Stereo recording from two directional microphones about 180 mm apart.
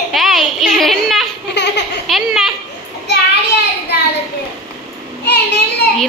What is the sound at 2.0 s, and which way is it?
Speech, centre (ahead or behind).